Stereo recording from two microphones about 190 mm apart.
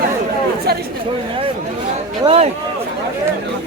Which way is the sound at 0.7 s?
55° right (ahead or behind).